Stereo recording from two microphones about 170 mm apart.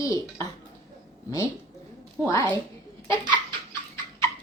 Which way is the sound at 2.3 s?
20° left (ahead or behind).